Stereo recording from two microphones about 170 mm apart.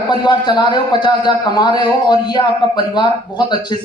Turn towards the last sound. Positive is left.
turn(degrees=25)  # may be behind; listen again after turning